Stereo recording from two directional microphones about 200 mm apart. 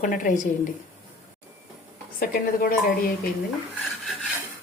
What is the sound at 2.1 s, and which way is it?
Speech, 45° left (ahead or behind).